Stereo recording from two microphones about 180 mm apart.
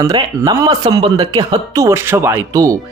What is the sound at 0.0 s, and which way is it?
Speech, 20° right (ahead or behind).